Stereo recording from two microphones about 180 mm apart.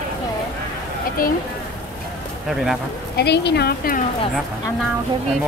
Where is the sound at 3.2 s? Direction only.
65° left (ahead or behind).